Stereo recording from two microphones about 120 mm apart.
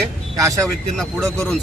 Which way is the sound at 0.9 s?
5° left (ahead or behind).